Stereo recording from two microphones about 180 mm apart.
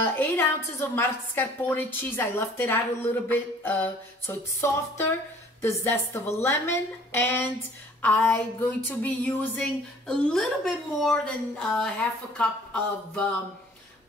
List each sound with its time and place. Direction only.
0.0 s a woman's voice: 10° left (ahead or behind)